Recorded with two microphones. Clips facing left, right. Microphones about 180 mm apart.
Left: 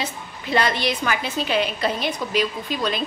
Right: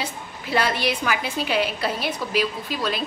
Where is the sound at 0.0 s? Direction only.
5° right (ahead or behind).